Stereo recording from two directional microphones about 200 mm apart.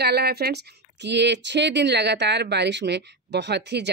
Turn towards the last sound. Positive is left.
turn(degrees=-60)  # may be behind; listen again after turning